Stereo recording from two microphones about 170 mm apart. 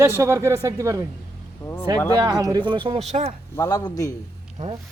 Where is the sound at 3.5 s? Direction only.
20° left (ahead or behind).